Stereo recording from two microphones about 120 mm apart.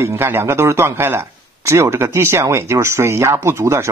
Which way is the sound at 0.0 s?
20° right (ahead or behind).